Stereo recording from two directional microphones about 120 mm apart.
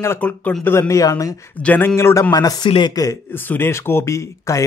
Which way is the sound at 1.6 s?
15° left (ahead or behind).